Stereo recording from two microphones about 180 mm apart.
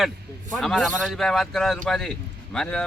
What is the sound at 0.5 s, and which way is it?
A man's voice, centre (ahead or behind).